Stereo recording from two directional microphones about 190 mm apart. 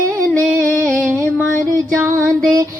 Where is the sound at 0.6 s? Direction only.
10° left (ahead or behind).